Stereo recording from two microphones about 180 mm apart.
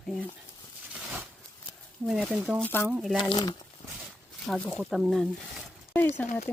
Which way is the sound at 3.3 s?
25° left (ahead or behind).